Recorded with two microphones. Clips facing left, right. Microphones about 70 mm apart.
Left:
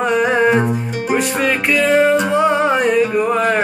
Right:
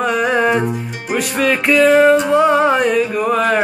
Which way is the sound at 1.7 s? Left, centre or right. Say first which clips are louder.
Right 4 dB; centre.